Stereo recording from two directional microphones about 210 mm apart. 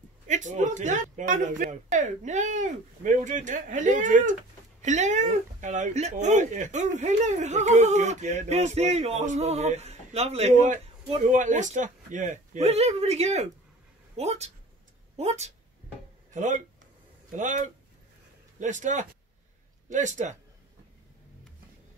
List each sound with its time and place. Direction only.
0.3 s speech: 35° right (ahead or behind)